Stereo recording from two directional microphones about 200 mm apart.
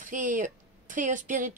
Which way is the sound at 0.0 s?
40° right (ahead or behind).